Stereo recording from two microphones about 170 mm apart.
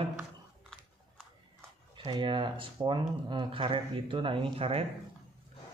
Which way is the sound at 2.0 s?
30° right (ahead or behind).